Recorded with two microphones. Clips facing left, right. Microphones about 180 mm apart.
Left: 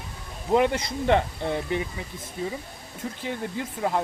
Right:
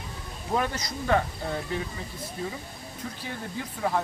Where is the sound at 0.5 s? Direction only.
25° left (ahead or behind).